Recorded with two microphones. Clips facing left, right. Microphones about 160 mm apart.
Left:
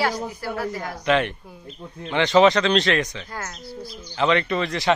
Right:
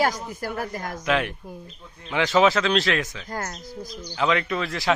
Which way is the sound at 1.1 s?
5° right (ahead or behind).